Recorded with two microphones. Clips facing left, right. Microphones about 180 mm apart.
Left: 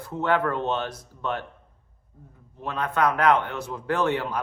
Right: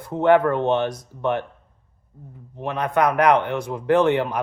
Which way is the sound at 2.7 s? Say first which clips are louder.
Right 4 dB; 15° right (ahead or behind).